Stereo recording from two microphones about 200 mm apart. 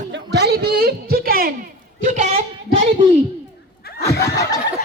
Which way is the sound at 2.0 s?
35° right (ahead or behind).